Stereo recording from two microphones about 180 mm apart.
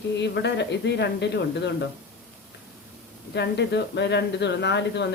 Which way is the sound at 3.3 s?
70° left (ahead or behind).